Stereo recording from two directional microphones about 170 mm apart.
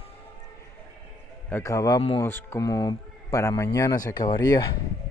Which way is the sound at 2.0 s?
35° left (ahead or behind).